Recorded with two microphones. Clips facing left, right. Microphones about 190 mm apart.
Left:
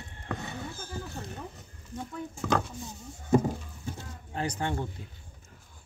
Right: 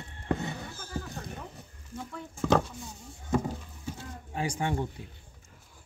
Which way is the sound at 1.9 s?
10° right (ahead or behind).